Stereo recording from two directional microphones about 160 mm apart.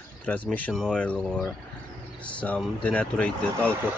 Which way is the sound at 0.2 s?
10° left (ahead or behind).